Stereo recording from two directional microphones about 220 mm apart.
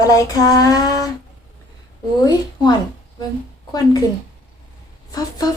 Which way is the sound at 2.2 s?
20° left (ahead or behind).